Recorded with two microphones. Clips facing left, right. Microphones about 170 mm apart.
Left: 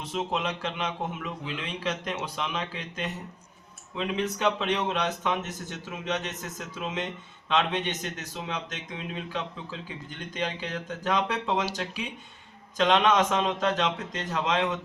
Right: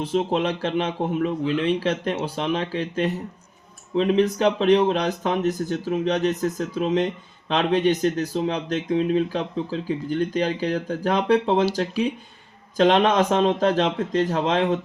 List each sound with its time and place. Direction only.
0.0 s speech: 30° right (ahead or behind)
1.2 s speech: 45° right (ahead or behind)
1.6 s speech: 35° right (ahead or behind)
12.7 s speech: 35° right (ahead or behind)